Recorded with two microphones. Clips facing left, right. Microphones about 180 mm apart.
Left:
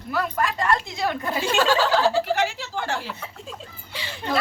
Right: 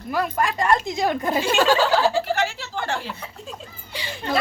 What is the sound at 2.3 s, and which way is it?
Speech, 15° left (ahead or behind).